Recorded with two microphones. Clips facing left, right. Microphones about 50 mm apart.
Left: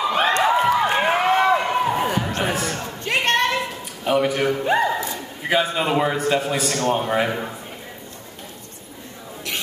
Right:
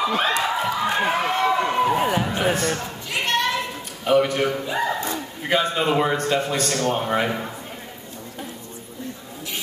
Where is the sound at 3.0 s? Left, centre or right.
Left.